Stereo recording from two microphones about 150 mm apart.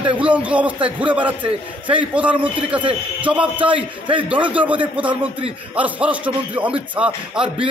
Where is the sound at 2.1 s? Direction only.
10° right (ahead or behind).